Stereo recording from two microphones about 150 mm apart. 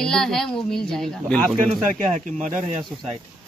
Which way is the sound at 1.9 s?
55° right (ahead or behind).